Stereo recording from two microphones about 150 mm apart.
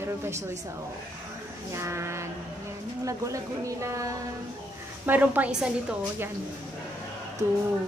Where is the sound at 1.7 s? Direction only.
20° right (ahead or behind).